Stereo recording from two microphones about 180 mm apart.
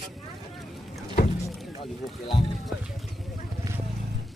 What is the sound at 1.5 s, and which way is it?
Rowboat, centre (ahead or behind).